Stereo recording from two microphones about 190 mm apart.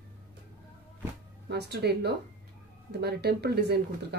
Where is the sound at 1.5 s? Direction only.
60° right (ahead or behind).